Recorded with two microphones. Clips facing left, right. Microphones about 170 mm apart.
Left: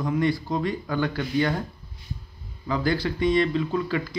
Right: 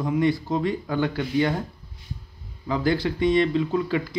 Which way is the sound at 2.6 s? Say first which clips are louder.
Right 2 dB; 20° right (ahead or behind).